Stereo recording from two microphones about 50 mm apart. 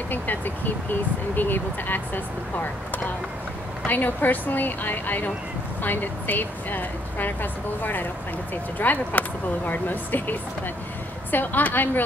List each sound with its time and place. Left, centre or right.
0.1 s speech: left
3.8 s speech: left
11.3 s speech: left